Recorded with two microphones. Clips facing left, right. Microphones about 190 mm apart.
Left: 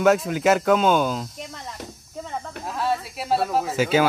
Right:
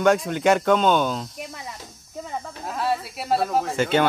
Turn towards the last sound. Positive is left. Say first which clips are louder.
# left 1 dB
turn(degrees=5)  # may be behind; listen again after turning